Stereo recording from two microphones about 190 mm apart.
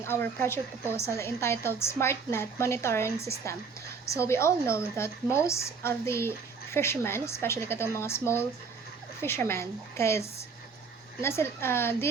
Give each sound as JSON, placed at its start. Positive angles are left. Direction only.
{"t": 0.0, "sound": "a woman's voice", "side_deg": 10}
{"t": 4.2, "sound": "a woman's voice", "side_deg": 15}